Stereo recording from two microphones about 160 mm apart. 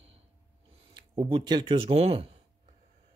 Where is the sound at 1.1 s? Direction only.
25° right (ahead or behind).